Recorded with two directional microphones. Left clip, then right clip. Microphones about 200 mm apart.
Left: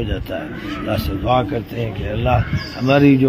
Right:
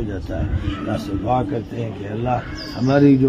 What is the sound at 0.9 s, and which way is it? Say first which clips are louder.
Speech: left 3 dB; 20° left (ahead or behind).